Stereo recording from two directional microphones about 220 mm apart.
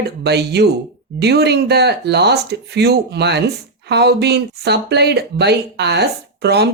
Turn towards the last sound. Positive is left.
turn(degrees=-50)  # may be behind; listen again after turning